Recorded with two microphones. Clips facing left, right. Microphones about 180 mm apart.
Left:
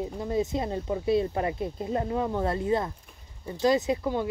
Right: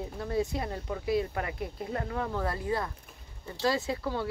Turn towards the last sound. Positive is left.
turn(degrees=15)  # may be behind; listen again after turning